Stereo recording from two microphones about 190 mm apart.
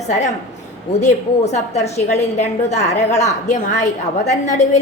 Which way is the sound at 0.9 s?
35° left (ahead or behind).